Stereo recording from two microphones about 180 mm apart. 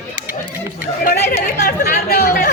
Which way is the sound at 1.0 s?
60° left (ahead or behind).